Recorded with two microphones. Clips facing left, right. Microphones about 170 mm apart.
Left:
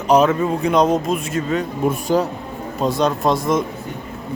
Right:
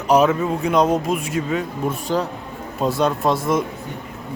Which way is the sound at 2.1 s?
10° left (ahead or behind).